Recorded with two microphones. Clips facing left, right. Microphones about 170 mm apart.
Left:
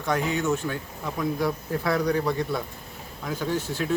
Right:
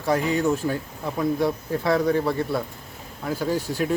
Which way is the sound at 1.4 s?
25° right (ahead or behind).